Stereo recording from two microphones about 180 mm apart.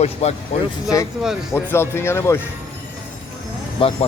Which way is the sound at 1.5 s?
15° left (ahead or behind).